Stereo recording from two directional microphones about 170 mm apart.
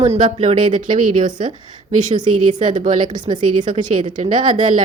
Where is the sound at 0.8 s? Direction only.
50° right (ahead or behind).